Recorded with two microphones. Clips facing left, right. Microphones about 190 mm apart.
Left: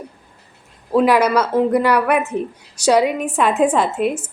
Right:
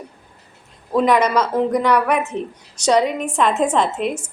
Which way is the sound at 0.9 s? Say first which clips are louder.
Left 2 dB; 10° left (ahead or behind).